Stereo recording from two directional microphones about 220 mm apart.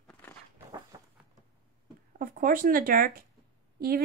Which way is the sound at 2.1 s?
40° right (ahead or behind).